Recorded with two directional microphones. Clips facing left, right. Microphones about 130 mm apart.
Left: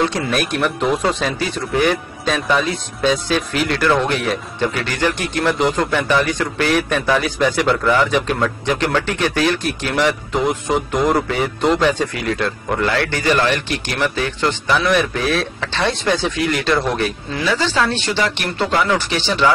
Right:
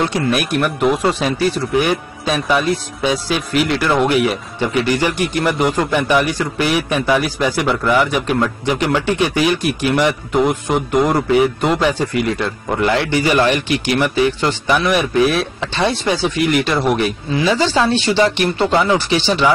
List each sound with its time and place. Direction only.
0.0 s a man's voice: 10° right (ahead or behind)